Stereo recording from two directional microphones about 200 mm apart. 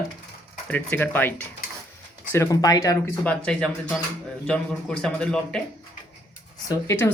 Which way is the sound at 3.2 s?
5° left (ahead or behind).